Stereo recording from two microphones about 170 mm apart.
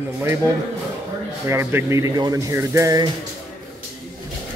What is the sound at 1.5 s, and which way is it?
Speech, 15° right (ahead or behind).